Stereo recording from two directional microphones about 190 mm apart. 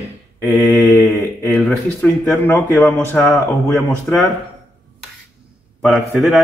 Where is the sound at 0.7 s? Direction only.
15° left (ahead or behind).